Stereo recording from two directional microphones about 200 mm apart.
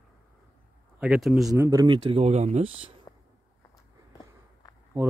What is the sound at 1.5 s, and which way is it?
Speech, 20° right (ahead or behind).